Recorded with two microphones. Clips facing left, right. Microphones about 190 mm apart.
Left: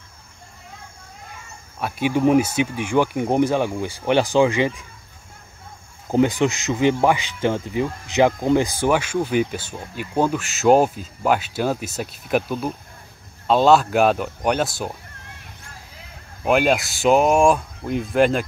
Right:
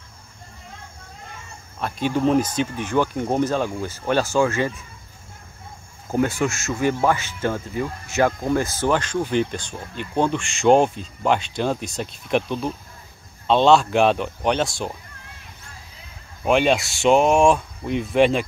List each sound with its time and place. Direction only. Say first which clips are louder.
1.8 s speech: left 2 dB; 10° left (ahead or behind)
6.0 s speech: left 3 dB; 15° left (ahead or behind)
16.4 s speech: even; 5° left (ahead or behind)